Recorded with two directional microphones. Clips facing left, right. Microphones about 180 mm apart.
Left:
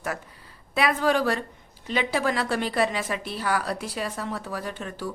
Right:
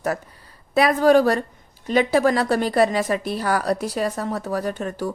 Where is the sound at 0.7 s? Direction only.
40° right (ahead or behind).